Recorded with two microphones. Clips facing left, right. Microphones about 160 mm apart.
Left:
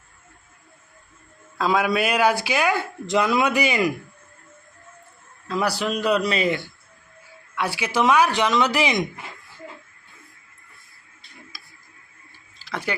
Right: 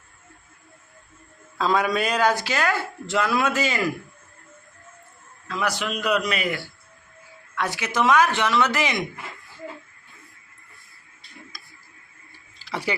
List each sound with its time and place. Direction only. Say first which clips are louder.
1.5 s speech: left 1 dB; 5° left (ahead or behind)
5.5 s a man's voice: left 3 dB; 35° left (ahead or behind)
7.5 s speech: left 2 dB; 10° left (ahead or behind)
11.5 s tick-tock: even; 5° left (ahead or behind)